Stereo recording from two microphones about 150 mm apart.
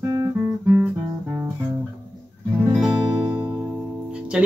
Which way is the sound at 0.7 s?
10° right (ahead or behind).